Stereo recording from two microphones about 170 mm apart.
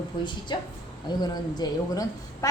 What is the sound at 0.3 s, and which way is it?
A woman's voice, 25° left (ahead or behind).